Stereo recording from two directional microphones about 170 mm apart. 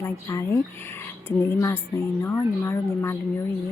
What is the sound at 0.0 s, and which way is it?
Speech, 15° left (ahead or behind).